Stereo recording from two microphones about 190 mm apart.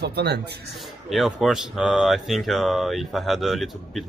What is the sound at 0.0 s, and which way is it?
Speech, 60° right (ahead or behind).